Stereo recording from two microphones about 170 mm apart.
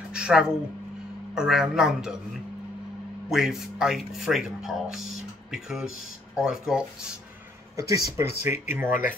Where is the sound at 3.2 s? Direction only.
5° right (ahead or behind).